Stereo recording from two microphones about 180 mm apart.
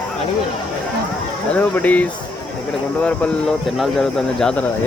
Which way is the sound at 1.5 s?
10° left (ahead or behind).